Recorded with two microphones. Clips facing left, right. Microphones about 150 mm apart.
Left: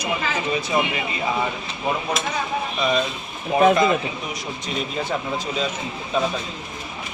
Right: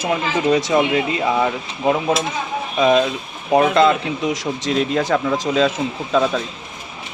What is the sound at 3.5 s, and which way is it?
Speech, 70° right (ahead or behind).